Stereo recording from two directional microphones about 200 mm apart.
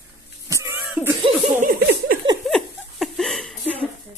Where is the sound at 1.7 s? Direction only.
55° right (ahead or behind).